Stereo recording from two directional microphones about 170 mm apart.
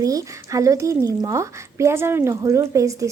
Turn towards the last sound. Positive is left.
turn(degrees=-20)  # may be behind; listen again after turning